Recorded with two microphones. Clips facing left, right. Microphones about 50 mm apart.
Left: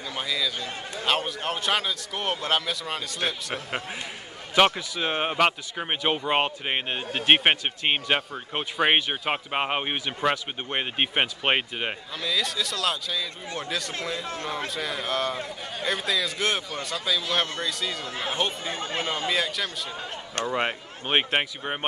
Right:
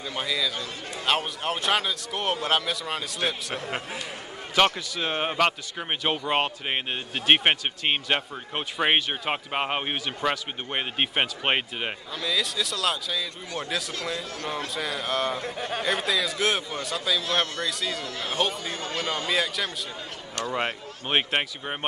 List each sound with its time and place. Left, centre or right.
0.0 s a man's voice: centre
14.2 s speech: left
14.7 s a man's voice: centre
18.0 s speech: left
19.2 s a man's voice: centre